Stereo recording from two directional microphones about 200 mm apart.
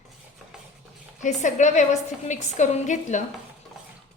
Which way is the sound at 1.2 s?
35° left (ahead or behind).